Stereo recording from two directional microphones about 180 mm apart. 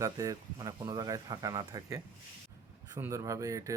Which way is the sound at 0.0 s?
20° right (ahead or behind).